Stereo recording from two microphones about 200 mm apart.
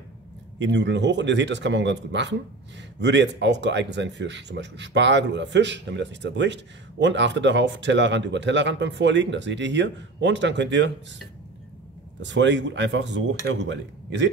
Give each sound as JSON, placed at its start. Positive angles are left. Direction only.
{"t": 0.6, "sound": "speech", "side_deg": -65}
{"t": 12.2, "sound": "speech", "side_deg": -60}